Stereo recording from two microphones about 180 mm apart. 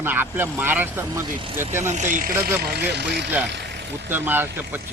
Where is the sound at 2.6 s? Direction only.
60° right (ahead or behind).